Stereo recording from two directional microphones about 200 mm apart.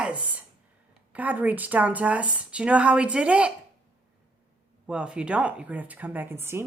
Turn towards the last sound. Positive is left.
turn(degrees=-10)  # may be behind; listen again after turning